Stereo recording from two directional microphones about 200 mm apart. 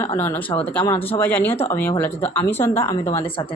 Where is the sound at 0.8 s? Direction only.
25° left (ahead or behind).